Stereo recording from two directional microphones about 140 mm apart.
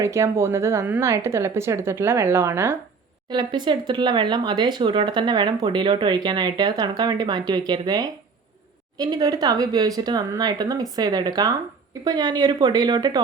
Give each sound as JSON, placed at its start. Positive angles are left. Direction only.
{"t": 0.0, "sound": "speech", "side_deg": -20}
{"t": 3.2, "sound": "speech", "side_deg": -30}